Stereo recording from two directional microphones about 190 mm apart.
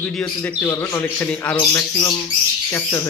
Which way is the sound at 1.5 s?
20° left (ahead or behind).